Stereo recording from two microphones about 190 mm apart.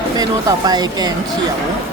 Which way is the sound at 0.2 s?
20° right (ahead or behind).